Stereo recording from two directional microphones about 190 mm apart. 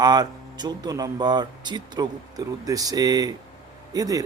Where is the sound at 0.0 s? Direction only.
20° right (ahead or behind).